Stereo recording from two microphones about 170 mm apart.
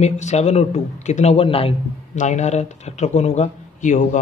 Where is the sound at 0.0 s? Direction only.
40° left (ahead or behind).